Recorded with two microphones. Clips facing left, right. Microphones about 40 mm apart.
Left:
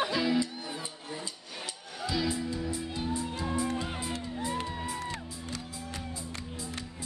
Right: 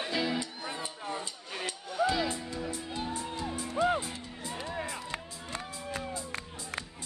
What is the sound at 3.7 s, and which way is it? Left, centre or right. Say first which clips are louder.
Music: right 8 dB; right.